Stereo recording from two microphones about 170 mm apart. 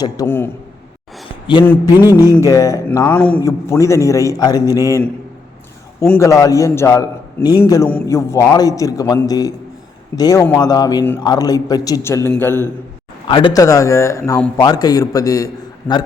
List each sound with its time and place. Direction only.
0.0 s a man's voice: 15° left (ahead or behind)
2.0 s music: 15° right (ahead or behind)
2.4 s a man's voice: 20° left (ahead or behind)
3.2 s a man's voice: 10° left (ahead or behind)
13.2 s a man's voice: 30° left (ahead or behind); by 16.0 s 10° left (ahead or behind)